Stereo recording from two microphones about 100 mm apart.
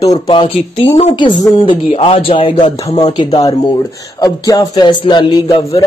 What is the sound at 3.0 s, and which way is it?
Speech, 45° left (ahead or behind).